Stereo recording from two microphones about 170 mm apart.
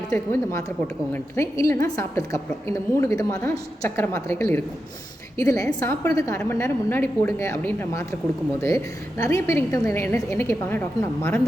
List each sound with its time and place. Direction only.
0.1 s a woman's voice: 15° left (ahead or behind)